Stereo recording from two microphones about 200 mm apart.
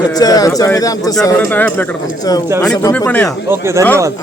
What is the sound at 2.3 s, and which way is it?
Speech, 20° left (ahead or behind).